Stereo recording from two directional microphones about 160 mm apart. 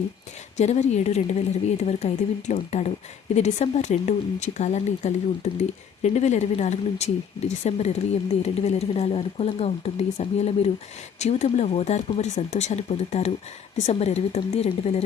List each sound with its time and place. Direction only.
0.5 s speech: 45° left (ahead or behind)